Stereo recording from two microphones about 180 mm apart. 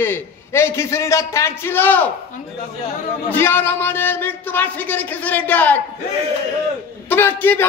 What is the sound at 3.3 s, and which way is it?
A man's voice, 10° left (ahead or behind).